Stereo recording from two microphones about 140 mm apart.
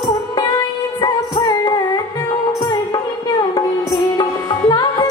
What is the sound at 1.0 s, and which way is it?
Music, 30° left (ahead or behind).